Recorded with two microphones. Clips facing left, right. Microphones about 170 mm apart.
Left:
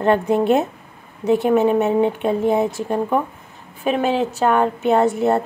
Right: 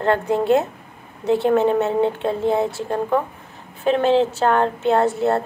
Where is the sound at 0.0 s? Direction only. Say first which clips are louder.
Left 2 dB; 20° left (ahead or behind).